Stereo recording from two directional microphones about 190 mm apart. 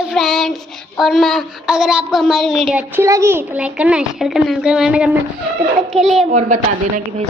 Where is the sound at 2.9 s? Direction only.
15° right (ahead or behind).